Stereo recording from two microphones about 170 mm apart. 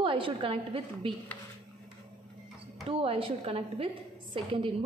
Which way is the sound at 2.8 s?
30° right (ahead or behind).